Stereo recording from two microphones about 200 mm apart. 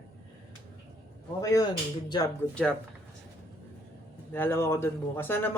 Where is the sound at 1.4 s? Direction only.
15° left (ahead or behind).